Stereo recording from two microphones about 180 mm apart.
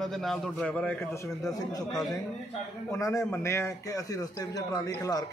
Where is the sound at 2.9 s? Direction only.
15° left (ahead or behind).